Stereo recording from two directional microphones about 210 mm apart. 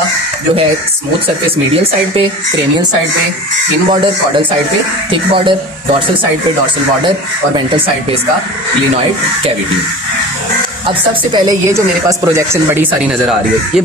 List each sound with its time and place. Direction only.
3.9 s speech: 25° right (ahead or behind)
7.5 s speech: 25° right (ahead or behind)
10.9 s speech: 20° right (ahead or behind)
13.0 s speech: centre (ahead or behind)